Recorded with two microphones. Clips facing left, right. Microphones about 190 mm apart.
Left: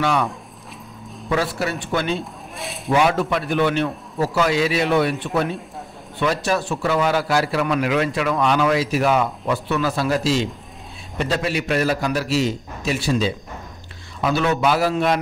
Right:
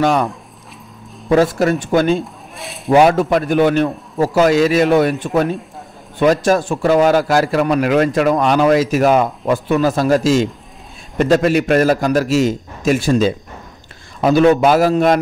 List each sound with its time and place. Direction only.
0.0 s a man's voice: 45° right (ahead or behind)
1.3 s a man's voice: 45° right (ahead or behind)
2.5 s speech: centre (ahead or behind)
2.9 s a man's voice: 45° right (ahead or behind)